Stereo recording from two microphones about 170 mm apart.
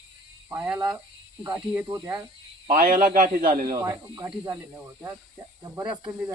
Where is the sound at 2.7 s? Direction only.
55° right (ahead or behind).